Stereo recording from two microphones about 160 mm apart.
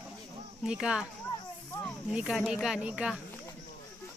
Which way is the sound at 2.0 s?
5° right (ahead or behind).